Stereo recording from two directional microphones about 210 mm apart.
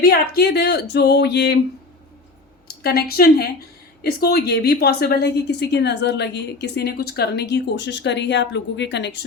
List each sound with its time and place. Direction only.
0.0 s speech: 50° left (ahead or behind)
2.8 s speech: 45° left (ahead or behind)